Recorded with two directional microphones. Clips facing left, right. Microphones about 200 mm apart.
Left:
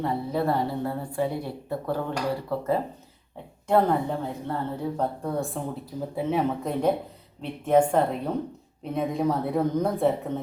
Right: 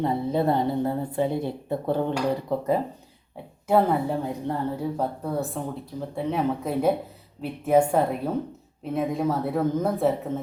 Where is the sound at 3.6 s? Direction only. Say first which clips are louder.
Right 1 dB; 5° right (ahead or behind).